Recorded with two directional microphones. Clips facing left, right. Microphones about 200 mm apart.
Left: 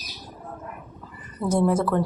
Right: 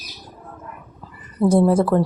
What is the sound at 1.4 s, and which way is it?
Speech, 30° right (ahead or behind).